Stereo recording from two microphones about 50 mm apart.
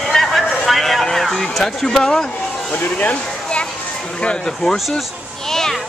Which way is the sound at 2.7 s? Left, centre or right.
Left.